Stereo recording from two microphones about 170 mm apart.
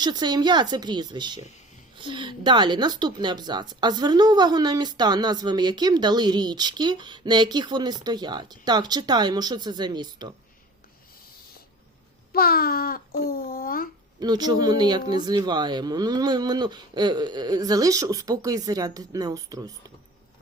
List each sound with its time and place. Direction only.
0.0 s speech: 25° right (ahead or behind)
12.3 s a child's voice: 60° left (ahead or behind)
14.2 s speech: 25° right (ahead or behind)